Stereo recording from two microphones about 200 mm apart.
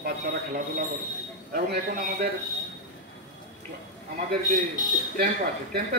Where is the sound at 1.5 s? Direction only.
50° right (ahead or behind).